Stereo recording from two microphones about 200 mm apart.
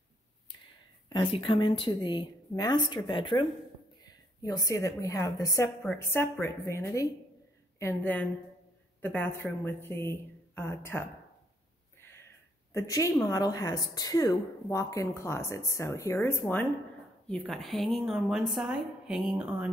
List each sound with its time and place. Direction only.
1.0 s a woman's voice: 25° left (ahead or behind)
12.7 s a woman's voice: 15° left (ahead or behind); by 19.7 s 5° right (ahead or behind)